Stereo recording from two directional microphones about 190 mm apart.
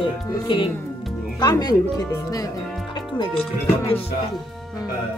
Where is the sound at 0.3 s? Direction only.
25° left (ahead or behind).